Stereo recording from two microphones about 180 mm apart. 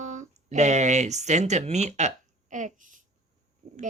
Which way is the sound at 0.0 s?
45° right (ahead or behind).